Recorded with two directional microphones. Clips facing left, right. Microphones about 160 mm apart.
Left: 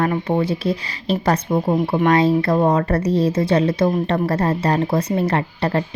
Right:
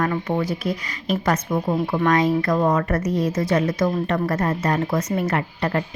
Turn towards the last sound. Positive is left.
turn(degrees=30)  # may be behind; listen again after turning